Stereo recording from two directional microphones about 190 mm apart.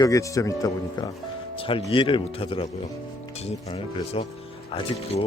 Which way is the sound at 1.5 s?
30° left (ahead or behind).